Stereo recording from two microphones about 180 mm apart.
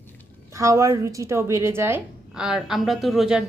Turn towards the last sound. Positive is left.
turn(degrees=0)  # may be behind; listen again after turning